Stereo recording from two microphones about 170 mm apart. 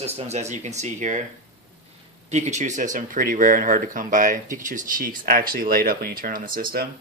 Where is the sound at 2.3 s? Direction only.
45° right (ahead or behind).